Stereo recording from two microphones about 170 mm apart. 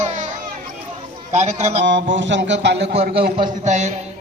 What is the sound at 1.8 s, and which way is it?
Speech, 90° right.